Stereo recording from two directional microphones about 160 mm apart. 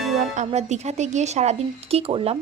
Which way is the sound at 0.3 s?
45° right (ahead or behind).